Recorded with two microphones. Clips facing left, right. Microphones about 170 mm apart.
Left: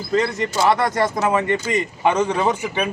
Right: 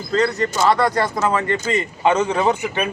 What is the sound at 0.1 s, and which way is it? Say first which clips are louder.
Speech: right 1 dB; 15° left (ahead or behind).